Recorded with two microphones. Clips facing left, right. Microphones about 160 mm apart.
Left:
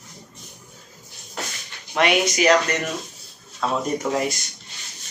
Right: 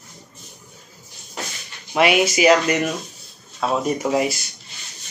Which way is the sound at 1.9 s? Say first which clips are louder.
Right 3 dB; 5° right (ahead or behind).